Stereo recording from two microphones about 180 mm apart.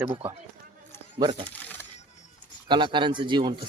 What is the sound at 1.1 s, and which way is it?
Speech, 25° right (ahead or behind).